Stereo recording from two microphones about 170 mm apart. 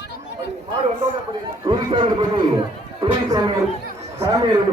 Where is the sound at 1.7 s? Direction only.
25° right (ahead or behind).